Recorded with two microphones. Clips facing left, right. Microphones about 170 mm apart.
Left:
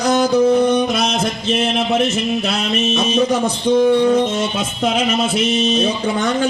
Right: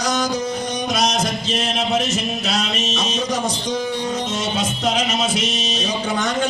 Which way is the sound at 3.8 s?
60° left (ahead or behind).